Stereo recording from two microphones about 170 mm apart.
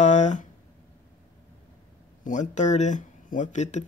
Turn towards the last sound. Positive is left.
turn(degrees=45)  # may be behind; listen again after turning